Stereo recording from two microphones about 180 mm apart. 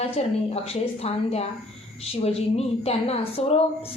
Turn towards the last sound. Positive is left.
turn(degrees=35)  # may be behind; listen again after turning